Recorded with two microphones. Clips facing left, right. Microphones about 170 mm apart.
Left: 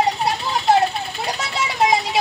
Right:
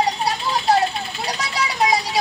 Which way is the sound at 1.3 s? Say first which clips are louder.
Left 1 dB; 25° left (ahead or behind).